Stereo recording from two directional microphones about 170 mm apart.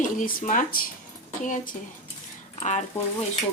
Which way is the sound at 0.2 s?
50° left (ahead or behind).